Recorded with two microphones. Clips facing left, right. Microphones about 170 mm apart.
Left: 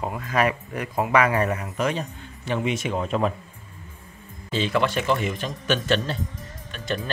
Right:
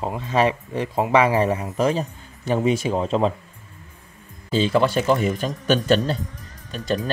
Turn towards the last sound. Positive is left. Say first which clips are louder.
# right 5 dB
turn(degrees=-35)  # may be behind; listen again after turning